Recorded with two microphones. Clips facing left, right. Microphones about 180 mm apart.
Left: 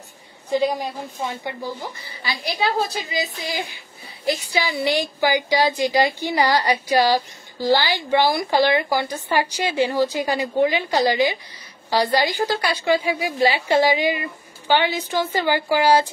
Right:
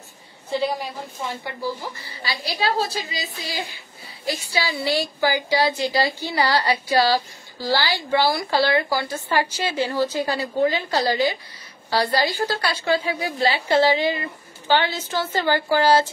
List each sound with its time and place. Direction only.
1.4 s a woman's voice: 20° left (ahead or behind)